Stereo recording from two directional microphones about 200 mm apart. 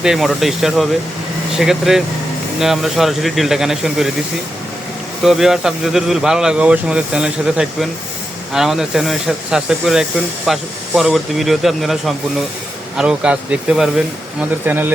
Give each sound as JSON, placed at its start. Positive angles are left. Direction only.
{"t": 0.0, "sound": "speech", "side_deg": 0}
{"t": 5.2, "sound": "speech", "side_deg": 0}